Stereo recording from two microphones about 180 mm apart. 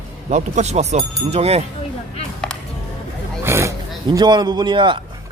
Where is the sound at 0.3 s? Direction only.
40° right (ahead or behind).